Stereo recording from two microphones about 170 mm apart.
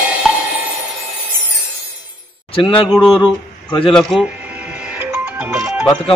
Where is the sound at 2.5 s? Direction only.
30° left (ahead or behind).